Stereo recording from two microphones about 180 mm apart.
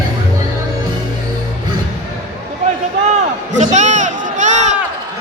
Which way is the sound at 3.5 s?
40° right (ahead or behind).